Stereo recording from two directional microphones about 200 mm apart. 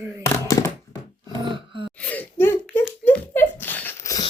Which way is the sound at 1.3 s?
25° right (ahead or behind).